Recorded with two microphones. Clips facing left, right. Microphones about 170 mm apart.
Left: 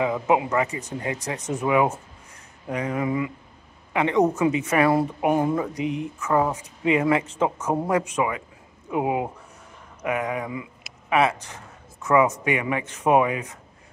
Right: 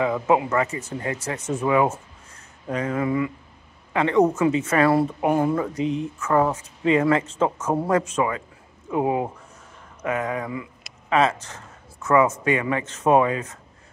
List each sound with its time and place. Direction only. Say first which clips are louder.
0.0 s speech: right 1 dB; 15° left (ahead or behind)